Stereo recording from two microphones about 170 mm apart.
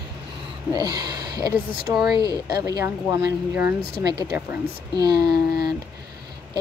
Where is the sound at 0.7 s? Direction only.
25° right (ahead or behind).